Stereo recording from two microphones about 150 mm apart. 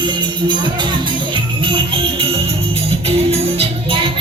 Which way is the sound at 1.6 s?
35° right (ahead or behind).